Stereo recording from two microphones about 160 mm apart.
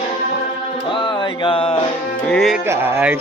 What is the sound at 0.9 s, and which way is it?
Music, 30° left (ahead or behind).